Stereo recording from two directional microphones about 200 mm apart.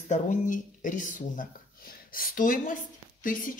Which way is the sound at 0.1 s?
40° left (ahead or behind).